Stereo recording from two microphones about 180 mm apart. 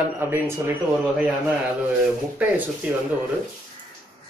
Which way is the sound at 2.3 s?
10° right (ahead or behind).